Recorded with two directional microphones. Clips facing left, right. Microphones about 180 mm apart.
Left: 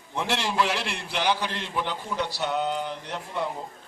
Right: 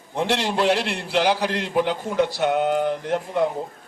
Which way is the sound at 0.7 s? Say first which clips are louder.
Right 8 dB; 65° right (ahead or behind).